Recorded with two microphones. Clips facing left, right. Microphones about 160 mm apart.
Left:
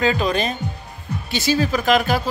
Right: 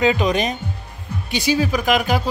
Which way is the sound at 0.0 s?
20° right (ahead or behind).